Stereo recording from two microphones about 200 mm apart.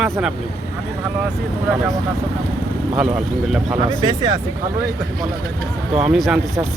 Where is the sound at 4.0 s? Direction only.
20° right (ahead or behind).